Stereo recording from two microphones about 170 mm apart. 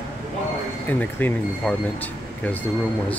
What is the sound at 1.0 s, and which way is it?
Speech, 10° left (ahead or behind).